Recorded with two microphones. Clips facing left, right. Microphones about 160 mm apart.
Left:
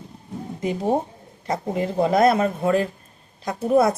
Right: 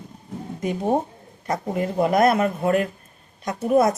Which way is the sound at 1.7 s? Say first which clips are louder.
Even; 25° left (ahead or behind).